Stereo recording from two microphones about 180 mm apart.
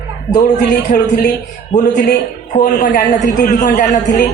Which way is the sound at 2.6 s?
55° left (ahead or behind).